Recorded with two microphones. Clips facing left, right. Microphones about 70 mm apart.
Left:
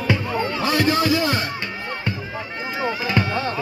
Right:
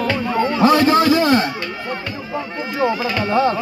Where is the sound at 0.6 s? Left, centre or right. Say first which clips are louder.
Right 7 dB; right.